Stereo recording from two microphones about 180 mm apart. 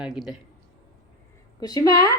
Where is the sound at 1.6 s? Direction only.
20° left (ahead or behind).